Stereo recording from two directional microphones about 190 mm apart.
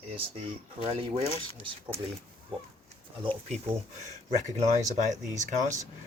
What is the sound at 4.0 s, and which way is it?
Speech, 40° right (ahead or behind).